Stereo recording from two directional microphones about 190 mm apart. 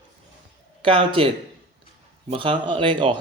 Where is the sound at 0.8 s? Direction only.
25° right (ahead or behind).